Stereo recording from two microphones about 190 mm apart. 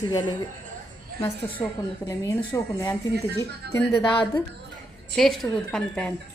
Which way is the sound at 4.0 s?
25° left (ahead or behind).